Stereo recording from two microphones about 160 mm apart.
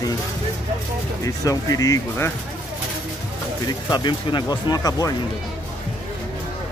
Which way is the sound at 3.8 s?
25° left (ahead or behind).